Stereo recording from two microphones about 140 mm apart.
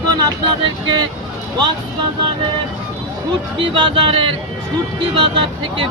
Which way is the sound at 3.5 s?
35° right (ahead or behind).